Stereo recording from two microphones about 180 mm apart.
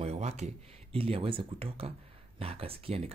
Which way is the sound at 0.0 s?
35° right (ahead or behind).